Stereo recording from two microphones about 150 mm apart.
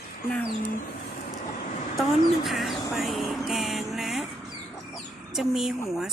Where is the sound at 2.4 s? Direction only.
Centre (ahead or behind).